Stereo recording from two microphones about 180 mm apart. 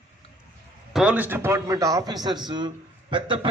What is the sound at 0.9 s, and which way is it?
A man's voice, 10° right (ahead or behind).